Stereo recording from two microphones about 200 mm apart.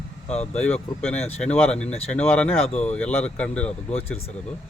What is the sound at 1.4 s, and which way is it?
Speech, 5° left (ahead or behind).